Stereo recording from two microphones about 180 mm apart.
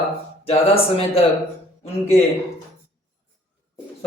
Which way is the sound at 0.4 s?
30° left (ahead or behind).